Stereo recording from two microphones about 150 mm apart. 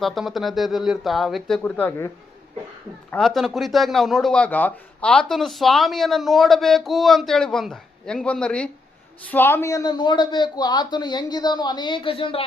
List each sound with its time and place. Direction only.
0.0 s a man's voice: centre (ahead or behind)
3.2 s a man's voice: centre (ahead or behind); by 12.5 s 35° left (ahead or behind)